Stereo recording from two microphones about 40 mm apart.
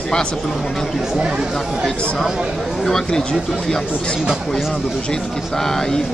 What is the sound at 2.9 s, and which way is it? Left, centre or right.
Speech, centre.